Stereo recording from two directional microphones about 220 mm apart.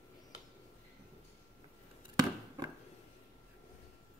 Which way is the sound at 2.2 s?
15° right (ahead or behind).